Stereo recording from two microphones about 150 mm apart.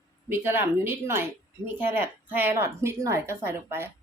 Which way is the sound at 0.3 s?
15° right (ahead or behind).